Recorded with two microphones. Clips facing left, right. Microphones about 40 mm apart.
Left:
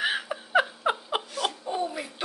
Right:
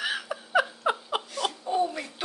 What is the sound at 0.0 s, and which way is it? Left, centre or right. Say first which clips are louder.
Laughter: left 3 dB; left.